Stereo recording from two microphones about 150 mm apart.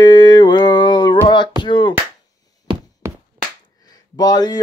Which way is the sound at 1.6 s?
30° left (ahead or behind).